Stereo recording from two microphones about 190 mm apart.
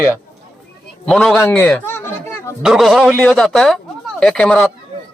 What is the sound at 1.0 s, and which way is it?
Speech, 5° left (ahead or behind).